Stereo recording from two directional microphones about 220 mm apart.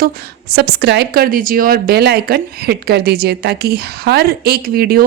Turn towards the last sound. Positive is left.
turn(degrees=-45)  # may be behind; listen again after turning